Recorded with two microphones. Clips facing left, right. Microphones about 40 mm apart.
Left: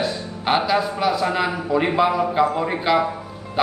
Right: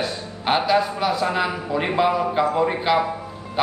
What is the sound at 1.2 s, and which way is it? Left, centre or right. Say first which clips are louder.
Speech: left 1 dB; left.